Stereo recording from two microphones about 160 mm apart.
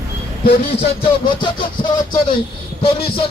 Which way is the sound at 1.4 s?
30° left (ahead or behind).